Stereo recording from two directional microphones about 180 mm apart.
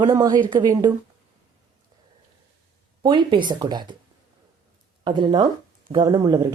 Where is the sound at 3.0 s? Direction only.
25° right (ahead or behind).